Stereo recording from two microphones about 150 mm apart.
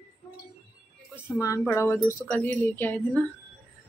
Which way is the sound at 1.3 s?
20° left (ahead or behind).